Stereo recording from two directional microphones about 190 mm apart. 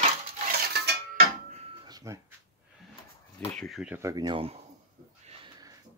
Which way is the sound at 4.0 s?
20° right (ahead or behind).